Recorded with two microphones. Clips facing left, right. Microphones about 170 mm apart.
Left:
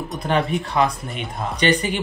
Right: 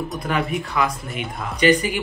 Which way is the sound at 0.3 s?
30° left (ahead or behind).